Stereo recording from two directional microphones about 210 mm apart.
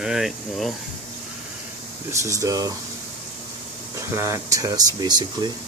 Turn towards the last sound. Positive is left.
turn(degrees=-20)  # may be behind; listen again after turning